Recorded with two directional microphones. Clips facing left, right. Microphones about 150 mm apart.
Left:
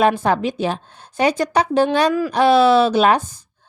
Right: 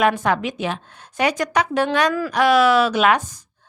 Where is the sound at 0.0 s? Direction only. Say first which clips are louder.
Left 2 dB; 30° left (ahead or behind).